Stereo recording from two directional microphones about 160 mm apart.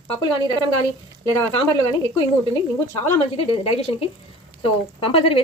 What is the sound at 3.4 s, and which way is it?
A woman's voice, 35° left (ahead or behind).